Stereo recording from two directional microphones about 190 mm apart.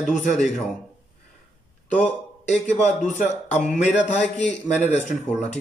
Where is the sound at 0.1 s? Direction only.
40° left (ahead or behind).